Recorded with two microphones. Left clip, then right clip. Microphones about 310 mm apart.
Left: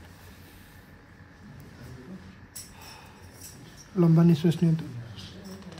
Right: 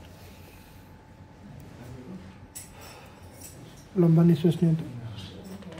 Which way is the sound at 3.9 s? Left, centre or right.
Centre.